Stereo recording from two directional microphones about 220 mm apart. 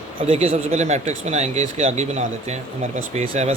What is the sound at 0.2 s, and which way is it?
Speech, 25° right (ahead or behind).